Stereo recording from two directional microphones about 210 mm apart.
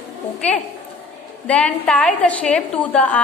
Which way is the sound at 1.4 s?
5° left (ahead or behind).